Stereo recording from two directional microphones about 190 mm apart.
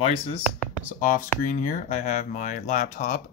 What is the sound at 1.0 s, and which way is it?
Speech, 45° left (ahead or behind).